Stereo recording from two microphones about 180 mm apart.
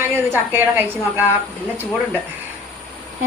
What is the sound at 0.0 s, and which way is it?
A woman's voice, 10° right (ahead or behind).